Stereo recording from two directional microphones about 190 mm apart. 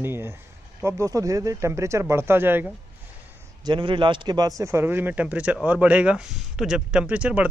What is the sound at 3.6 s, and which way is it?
Speech, 25° right (ahead or behind).